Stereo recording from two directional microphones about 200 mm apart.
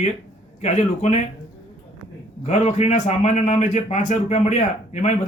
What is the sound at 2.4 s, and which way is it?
A man's voice, 35° left (ahead or behind).